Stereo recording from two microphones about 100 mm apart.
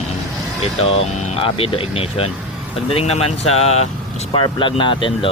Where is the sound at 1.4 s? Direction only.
65° left (ahead or behind).